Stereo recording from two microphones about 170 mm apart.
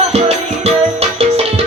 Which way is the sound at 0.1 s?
40° right (ahead or behind).